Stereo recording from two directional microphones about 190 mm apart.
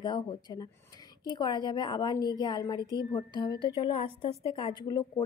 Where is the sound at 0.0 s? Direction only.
20° left (ahead or behind).